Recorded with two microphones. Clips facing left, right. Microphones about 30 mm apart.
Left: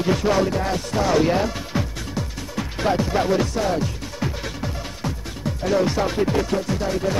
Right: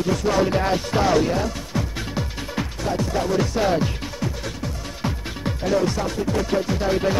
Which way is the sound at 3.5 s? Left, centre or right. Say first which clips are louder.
Right 2 dB; centre.